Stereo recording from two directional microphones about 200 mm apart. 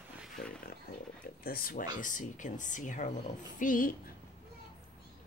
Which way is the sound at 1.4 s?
45° left (ahead or behind).